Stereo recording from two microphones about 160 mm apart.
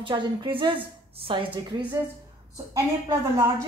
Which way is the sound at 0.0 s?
30° right (ahead or behind).